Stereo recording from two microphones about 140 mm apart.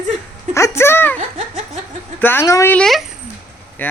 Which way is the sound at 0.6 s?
20° left (ahead or behind).